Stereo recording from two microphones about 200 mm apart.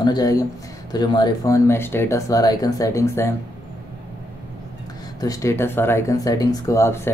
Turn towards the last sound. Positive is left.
turn(degrees=15)  # may be behind; listen again after turning